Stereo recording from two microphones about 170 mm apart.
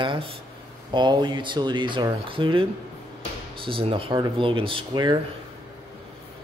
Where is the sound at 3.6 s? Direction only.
30° right (ahead or behind).